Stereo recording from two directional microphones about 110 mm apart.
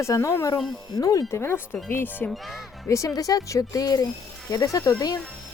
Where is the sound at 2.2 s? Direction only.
Centre (ahead or behind).